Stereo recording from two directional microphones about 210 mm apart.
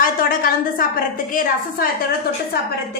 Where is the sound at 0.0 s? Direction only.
40° left (ahead or behind).